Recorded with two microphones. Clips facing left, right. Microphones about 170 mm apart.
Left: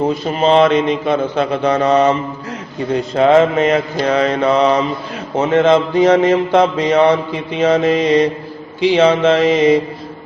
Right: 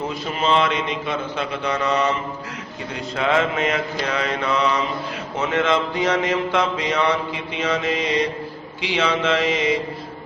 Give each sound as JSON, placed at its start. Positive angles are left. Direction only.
{"t": 0.3, "sound": "mantra", "side_deg": 40}